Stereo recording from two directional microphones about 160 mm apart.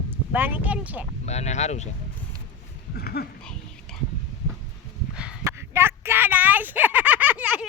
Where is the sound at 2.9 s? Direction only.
75° left (ahead or behind).